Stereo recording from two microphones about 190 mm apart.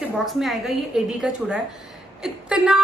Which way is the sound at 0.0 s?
Centre (ahead or behind).